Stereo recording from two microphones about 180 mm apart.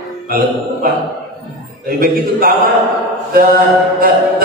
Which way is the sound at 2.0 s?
55° right (ahead or behind).